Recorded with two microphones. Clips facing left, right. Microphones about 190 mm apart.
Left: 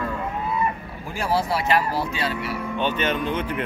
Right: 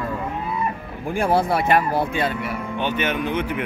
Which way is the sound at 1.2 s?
55° right (ahead or behind).